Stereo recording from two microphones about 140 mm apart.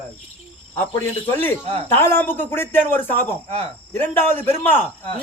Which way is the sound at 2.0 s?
15° left (ahead or behind).